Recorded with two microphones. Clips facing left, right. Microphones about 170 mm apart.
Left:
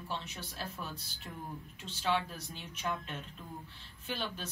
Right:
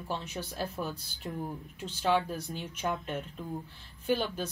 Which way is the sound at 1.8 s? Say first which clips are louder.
Right 5 dB; 45° right (ahead or behind).